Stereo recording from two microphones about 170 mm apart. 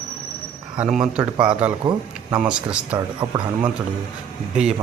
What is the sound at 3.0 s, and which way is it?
Speech, 20° right (ahead or behind).